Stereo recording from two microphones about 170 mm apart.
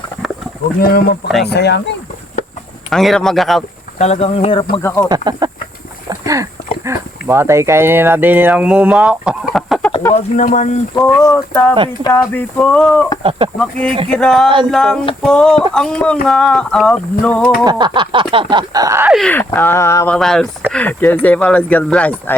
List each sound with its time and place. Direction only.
0.8 s speech: 65° left (ahead or behind)
1.5 s speech: 80° left
2.9 s a sound: centre (ahead or behind)
3.9 s speech: 40° left (ahead or behind)
4.8 s speech: 15° left (ahead or behind)
5.0 s speech: 25° right (ahead or behind)
6.1 s boat: 20° right (ahead or behind)
6.8 s speech: 15° right (ahead or behind); by 9.9 s centre (ahead or behind)
10.2 s speech: 50° left (ahead or behind)
10.9 s speech: 20° left (ahead or behind)
12.1 s a sound: 10° left (ahead or behind)
17.7 s speech: 25° right (ahead or behind)
19.1 s speech: 5° left (ahead or behind)
20.1 s speech: 5° left (ahead or behind)